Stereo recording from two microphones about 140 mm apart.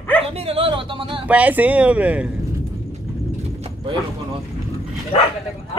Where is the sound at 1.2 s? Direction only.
10° right (ahead or behind).